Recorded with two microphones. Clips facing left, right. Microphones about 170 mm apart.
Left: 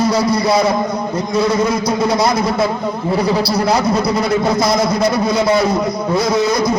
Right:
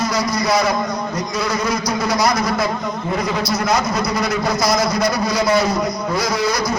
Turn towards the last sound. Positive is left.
turn(degrees=25)  # may be behind; listen again after turning